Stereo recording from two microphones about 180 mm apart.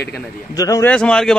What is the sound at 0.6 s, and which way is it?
Speech, 20° left (ahead or behind).